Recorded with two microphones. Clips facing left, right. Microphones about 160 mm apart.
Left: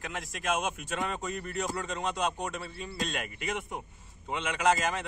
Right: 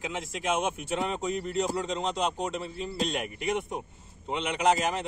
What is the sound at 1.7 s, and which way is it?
Speech, 25° right (ahead or behind).